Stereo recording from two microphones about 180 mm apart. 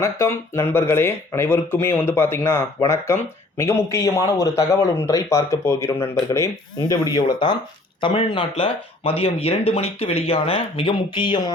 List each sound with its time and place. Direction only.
0.0 s speech: 15° left (ahead or behind)